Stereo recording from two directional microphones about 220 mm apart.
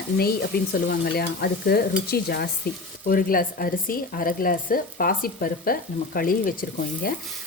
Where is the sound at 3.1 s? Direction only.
40° left (ahead or behind).